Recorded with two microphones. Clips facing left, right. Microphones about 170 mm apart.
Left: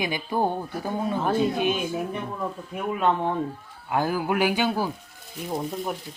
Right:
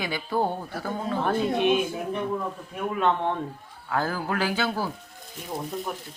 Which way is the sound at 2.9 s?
5° left (ahead or behind).